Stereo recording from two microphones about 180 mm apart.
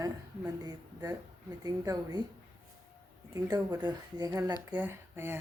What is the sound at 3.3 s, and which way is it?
A woman's voice, 20° right (ahead or behind).